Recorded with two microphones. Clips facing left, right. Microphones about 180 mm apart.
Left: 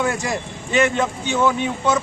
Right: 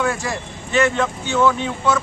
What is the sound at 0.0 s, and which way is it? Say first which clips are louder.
Speech: even; 15° left (ahead or behind).